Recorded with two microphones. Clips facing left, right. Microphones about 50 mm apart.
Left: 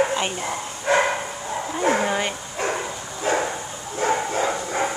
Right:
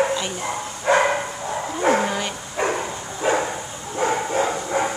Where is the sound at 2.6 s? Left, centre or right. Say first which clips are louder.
Right 3 dB; centre.